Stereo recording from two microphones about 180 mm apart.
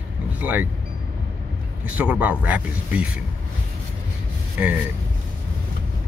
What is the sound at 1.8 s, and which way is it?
Speech, 10° right (ahead or behind).